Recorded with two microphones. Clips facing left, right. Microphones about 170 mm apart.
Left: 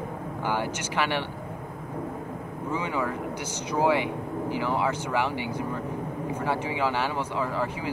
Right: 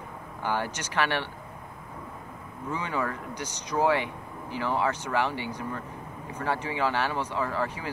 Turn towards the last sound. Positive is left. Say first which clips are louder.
# left 1 dB
turn(degrees=15)  # may be behind; listen again after turning